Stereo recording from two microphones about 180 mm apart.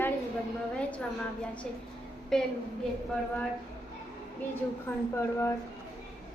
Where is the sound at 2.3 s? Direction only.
Centre (ahead or behind).